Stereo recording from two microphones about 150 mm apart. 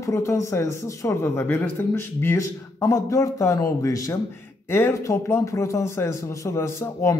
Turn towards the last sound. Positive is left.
turn(degrees=20)  # may be behind; listen again after turning